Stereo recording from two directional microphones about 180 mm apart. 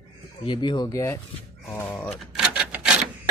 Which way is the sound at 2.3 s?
5° right (ahead or behind).